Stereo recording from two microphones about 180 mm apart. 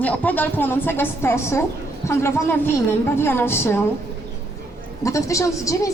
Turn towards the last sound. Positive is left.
turn(degrees=15)  # may be behind; listen again after turning